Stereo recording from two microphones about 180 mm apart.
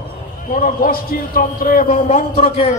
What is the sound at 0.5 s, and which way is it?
A man's voice, 50° left (ahead or behind).